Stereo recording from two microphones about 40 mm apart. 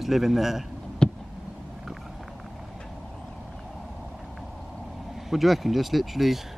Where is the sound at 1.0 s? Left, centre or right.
Left.